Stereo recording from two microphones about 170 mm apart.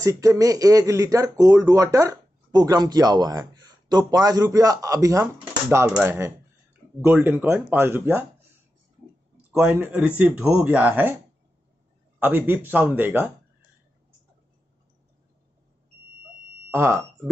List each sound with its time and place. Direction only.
0.0 s speech: 20° right (ahead or behind)
9.5 s speech: 5° right (ahead or behind)
12.2 s speech: 10° right (ahead or behind)
16.7 s speech: 15° right (ahead or behind)